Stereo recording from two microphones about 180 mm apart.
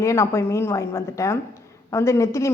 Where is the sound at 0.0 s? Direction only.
15° left (ahead or behind).